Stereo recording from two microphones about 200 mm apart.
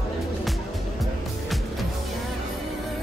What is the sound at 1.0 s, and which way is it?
Music, centre (ahead or behind).